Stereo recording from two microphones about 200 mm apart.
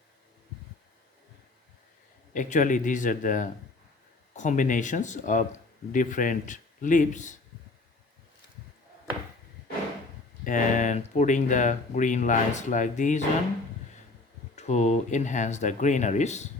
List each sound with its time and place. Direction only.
2.3 s speech: 40° left (ahead or behind)
10.4 s speech: 40° left (ahead or behind)
14.5 s speech: 35° left (ahead or behind)